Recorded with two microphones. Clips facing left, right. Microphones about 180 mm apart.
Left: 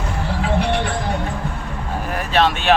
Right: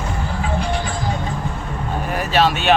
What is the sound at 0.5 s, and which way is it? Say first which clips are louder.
Music: left 3 dB; 65° left (ahead or behind).